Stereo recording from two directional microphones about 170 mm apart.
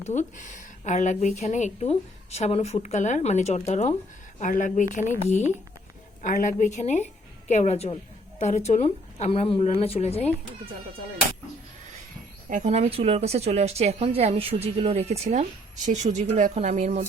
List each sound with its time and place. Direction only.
0.0 s speech: 45° left (ahead or behind)
6.2 s speech: 50° left (ahead or behind)
12.5 s a woman's voice: 45° right (ahead or behind)